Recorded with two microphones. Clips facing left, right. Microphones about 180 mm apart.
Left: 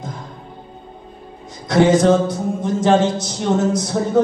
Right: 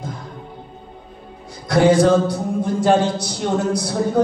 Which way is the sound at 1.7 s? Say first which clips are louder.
Even; 20° left (ahead or behind).